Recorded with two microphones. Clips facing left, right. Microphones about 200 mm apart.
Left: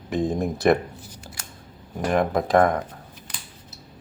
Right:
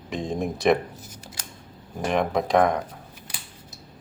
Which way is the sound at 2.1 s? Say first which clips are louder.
Left 2 dB; centre (ahead or behind).